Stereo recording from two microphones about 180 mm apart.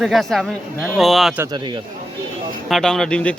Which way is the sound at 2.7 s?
Centre (ahead or behind).